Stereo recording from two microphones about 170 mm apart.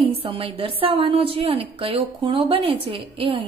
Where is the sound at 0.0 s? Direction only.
30° right (ahead or behind).